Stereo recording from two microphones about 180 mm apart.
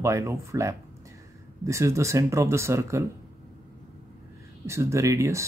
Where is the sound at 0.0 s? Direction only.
15° right (ahead or behind).